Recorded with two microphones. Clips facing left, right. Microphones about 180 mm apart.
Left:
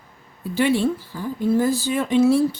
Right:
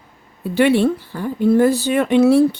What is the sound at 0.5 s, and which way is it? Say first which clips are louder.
A woman's voice: right 5 dB; 65° right (ahead or behind).